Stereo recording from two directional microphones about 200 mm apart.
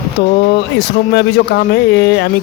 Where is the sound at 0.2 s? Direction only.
55° left (ahead or behind).